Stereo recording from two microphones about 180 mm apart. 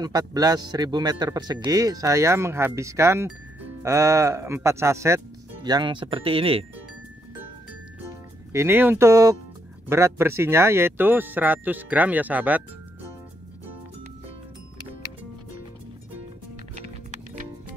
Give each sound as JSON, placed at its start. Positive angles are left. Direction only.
{"t": 0.0, "sound": "speech", "side_deg": -20}
{"t": 8.5, "sound": "speech", "side_deg": -10}